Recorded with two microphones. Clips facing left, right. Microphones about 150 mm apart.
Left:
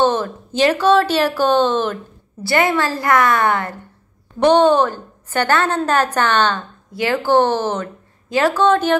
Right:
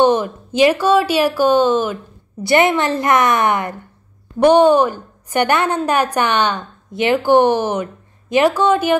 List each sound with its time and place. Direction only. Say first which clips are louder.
0.0 s a woman's voice: right 3 dB; 15° right (ahead or behind)